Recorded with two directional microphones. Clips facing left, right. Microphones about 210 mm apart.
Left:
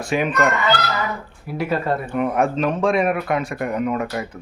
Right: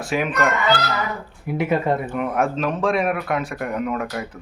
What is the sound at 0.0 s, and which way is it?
Speech, centre (ahead or behind).